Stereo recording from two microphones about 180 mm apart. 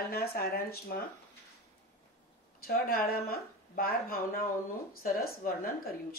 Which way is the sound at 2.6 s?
55° left (ahead or behind).